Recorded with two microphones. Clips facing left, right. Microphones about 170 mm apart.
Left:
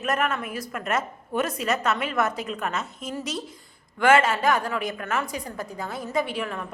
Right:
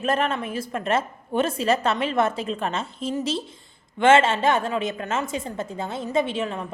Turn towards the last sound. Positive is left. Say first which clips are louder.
# right 3 dB
turn(degrees=-25)  # may be behind; listen again after turning